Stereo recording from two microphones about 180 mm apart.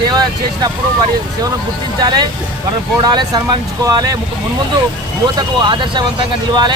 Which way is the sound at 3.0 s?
25° right (ahead or behind).